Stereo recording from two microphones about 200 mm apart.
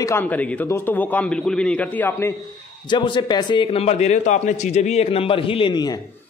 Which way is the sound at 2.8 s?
25° left (ahead or behind).